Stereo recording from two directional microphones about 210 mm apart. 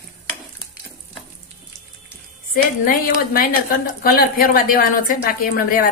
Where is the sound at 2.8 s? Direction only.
40° left (ahead or behind).